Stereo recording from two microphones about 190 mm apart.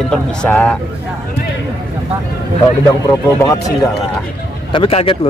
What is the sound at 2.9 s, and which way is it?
Speech, 15° left (ahead or behind).